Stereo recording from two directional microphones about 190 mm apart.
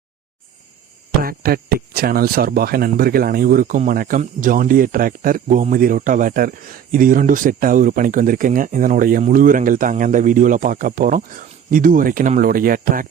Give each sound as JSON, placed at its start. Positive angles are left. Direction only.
{"t": 1.2, "sound": "speech", "side_deg": -50}